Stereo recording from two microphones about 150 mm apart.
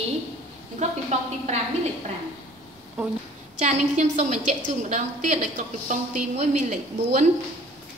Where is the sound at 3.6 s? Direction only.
50° right (ahead or behind).